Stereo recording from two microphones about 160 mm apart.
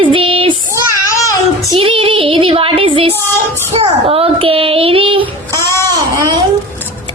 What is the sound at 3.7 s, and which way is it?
A child's voice, 35° right (ahead or behind).